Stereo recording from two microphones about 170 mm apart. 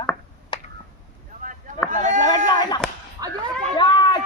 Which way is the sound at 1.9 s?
45° right (ahead or behind).